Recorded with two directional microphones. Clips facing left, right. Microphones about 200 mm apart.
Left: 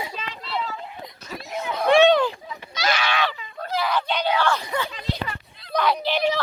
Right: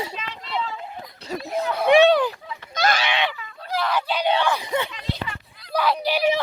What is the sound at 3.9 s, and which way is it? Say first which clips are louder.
Crowd: even; 5° right (ahead or behind).